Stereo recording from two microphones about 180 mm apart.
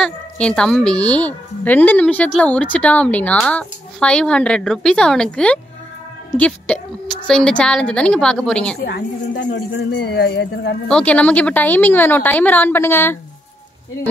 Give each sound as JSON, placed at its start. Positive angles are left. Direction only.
{"t": 0.0, "sound": "speech", "side_deg": 5}
{"t": 8.8, "sound": "a woman's voice", "side_deg": 70}
{"t": 10.9, "sound": "speech", "side_deg": 5}